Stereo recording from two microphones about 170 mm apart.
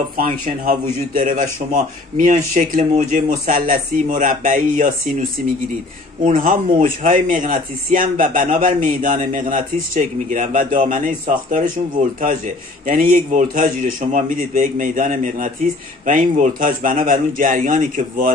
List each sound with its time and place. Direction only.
0.2 s speech: 55° right (ahead or behind)
12.8 s speech: 55° right (ahead or behind)